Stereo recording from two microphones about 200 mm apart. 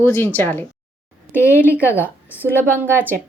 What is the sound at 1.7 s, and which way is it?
Speech, 10° left (ahead or behind).